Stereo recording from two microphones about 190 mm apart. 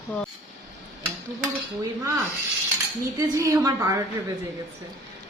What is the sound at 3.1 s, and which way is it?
Speech, 20° right (ahead or behind).